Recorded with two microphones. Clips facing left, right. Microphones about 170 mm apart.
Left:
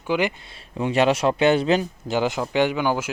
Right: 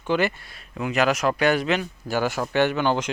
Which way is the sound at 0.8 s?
30° left (ahead or behind).